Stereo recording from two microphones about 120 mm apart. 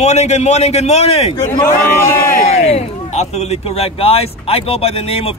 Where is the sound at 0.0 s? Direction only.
65° left (ahead or behind).